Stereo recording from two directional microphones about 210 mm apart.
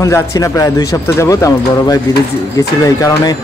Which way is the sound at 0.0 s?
15° left (ahead or behind).